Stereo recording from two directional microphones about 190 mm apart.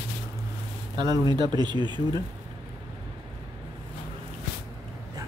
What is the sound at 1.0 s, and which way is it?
Speech, 20° right (ahead or behind).